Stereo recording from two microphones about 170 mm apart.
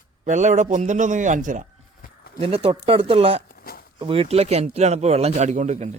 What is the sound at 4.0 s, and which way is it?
Speech, 30° right (ahead or behind).